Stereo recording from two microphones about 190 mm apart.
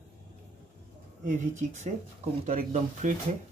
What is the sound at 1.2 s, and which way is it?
Speech, 45° right (ahead or behind).